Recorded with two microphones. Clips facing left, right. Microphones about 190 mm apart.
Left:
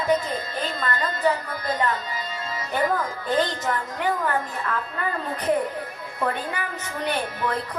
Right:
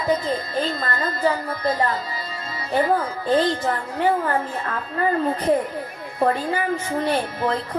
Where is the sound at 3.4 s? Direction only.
35° right (ahead or behind).